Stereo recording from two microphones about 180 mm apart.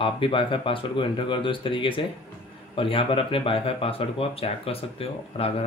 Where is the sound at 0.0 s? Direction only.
30° left (ahead or behind).